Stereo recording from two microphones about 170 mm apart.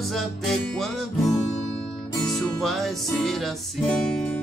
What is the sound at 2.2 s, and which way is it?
Music, centre (ahead or behind).